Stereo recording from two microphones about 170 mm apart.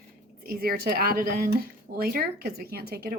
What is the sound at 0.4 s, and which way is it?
Speech, 60° right (ahead or behind).